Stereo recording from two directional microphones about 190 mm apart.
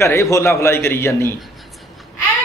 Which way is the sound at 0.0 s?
15° left (ahead or behind).